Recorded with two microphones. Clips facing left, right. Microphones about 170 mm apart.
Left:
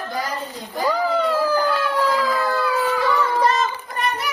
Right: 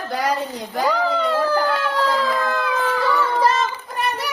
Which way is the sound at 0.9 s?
10° left (ahead or behind).